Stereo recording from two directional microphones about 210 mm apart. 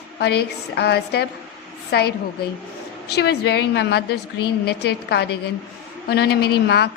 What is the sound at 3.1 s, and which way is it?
A woman's voice, 50° left (ahead or behind).